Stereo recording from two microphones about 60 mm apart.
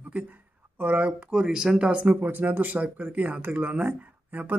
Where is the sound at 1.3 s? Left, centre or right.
Centre.